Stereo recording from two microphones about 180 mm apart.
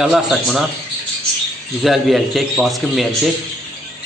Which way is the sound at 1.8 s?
Centre (ahead or behind).